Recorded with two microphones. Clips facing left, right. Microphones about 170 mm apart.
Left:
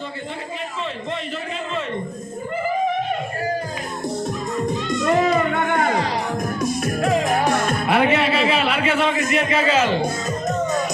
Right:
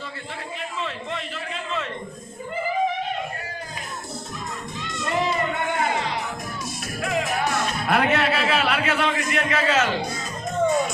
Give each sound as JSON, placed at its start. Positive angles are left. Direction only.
{"t": 5.0, "sound": "music", "side_deg": 55}
{"t": 7.0, "sound": "music", "side_deg": 40}
{"t": 7.9, "sound": "a sound", "side_deg": 0}
{"t": 10.0, "sound": "music", "side_deg": 40}